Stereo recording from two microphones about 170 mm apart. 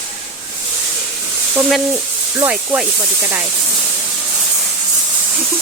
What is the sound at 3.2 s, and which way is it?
Speech, 15° right (ahead or behind).